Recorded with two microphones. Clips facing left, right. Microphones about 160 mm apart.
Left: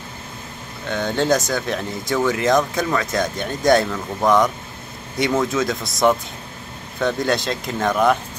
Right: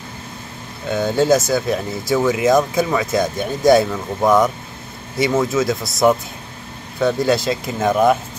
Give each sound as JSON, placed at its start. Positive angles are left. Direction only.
{"t": 0.8, "sound": "speech", "side_deg": -10}